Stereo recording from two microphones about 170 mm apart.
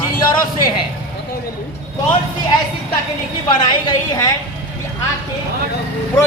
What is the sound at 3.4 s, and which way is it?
Speech, 25° left (ahead or behind).